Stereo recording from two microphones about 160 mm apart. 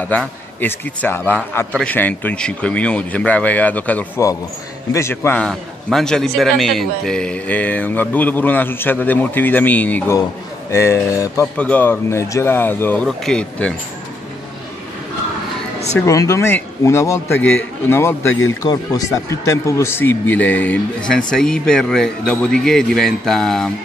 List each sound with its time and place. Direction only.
0.1 s a man's voice: 10° left (ahead or behind)
16.1 s a man's voice: 20° left (ahead or behind); by 23.7 s 5° left (ahead or behind)